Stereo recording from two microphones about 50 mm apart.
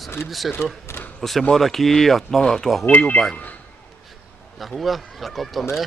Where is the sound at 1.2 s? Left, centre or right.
Centre.